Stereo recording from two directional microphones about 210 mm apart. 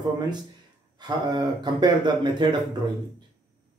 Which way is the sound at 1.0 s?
20° right (ahead or behind).